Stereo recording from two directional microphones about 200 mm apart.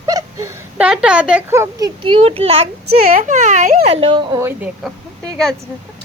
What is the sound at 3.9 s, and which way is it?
Speech, 30° right (ahead or behind).